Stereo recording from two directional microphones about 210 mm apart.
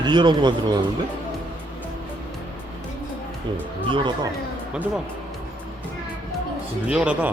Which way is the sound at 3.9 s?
20° right (ahead or behind).